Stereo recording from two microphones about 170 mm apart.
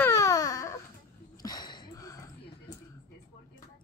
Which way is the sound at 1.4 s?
25° left (ahead or behind).